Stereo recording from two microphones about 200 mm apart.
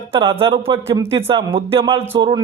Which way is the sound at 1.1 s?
25° right (ahead or behind).